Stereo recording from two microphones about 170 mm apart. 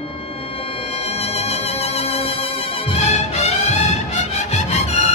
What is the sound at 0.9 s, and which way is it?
Music, 35° left (ahead or behind).